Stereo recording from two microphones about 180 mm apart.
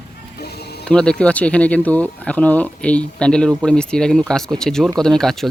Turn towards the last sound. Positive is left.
turn(degrees=0)  # may be behind; listen again after turning